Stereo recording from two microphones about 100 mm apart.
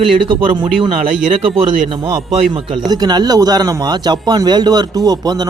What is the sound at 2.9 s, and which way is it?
Speech, 45° right (ahead or behind).